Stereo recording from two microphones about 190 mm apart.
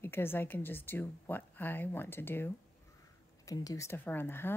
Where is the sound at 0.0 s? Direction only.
10° left (ahead or behind).